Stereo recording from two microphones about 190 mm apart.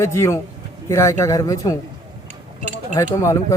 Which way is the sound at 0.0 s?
15° left (ahead or behind).